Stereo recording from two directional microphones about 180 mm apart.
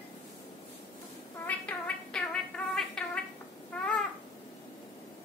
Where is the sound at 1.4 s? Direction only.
5° left (ahead or behind).